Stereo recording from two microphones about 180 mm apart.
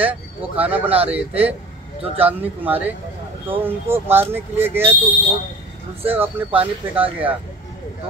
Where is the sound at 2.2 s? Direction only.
10° right (ahead or behind).